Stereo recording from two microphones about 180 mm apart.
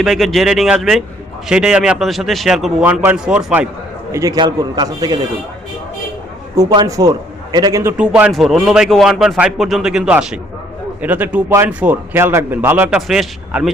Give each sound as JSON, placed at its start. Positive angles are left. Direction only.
{"t": 0.0, "sound": "a man's voice", "side_deg": 0}
{"t": 2.8, "sound": "speech", "side_deg": -10}
{"t": 4.1, "sound": "a man's voice", "side_deg": -20}
{"t": 6.6, "sound": "a man's voice", "side_deg": -20}